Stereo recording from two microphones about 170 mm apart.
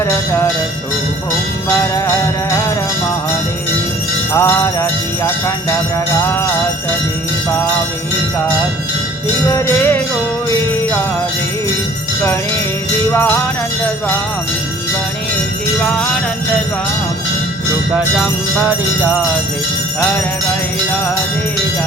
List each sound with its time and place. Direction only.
1.7 s jingle bell: 15° left (ahead or behind)
4.4 s jingle bell: 15° left (ahead or behind)
9.5 s jingle bell: 15° left (ahead or behind)
13.1 s jingle bell: 15° left (ahead or behind)
15.8 s jingle bell: 5° left (ahead or behind)